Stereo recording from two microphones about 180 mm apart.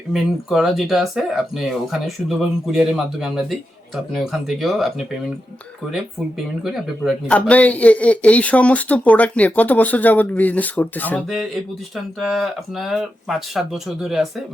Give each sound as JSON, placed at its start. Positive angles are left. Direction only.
{"t": 0.1, "sound": "speech", "side_deg": 0}
{"t": 6.7, "sound": "speech", "side_deg": 0}